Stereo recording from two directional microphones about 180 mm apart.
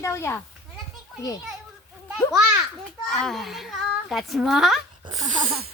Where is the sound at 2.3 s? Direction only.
5° right (ahead or behind).